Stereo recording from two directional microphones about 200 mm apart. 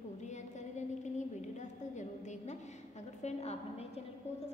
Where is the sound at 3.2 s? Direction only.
30° left (ahead or behind).